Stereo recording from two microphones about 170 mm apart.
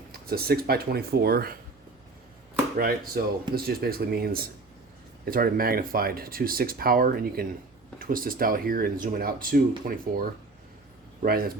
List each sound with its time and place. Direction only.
0.1 s speech: 65° right (ahead or behind)
2.7 s speech: 60° right (ahead or behind)